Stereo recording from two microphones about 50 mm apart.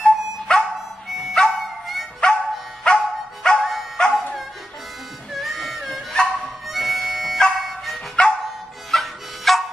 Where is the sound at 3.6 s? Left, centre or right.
Centre.